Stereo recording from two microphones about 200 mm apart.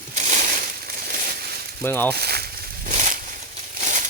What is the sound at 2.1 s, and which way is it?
Speech, 50° right (ahead or behind).